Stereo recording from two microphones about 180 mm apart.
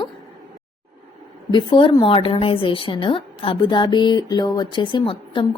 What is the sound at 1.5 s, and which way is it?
A woman's voice, 25° left (ahead or behind).